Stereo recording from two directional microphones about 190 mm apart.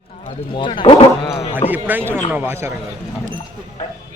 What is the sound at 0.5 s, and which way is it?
Speech, 25° left (ahead or behind).